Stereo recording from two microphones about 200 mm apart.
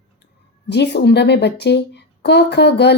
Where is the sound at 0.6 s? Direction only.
60° left (ahead or behind).